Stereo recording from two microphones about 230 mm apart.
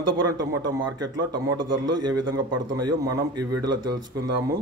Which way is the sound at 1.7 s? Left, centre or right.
Right.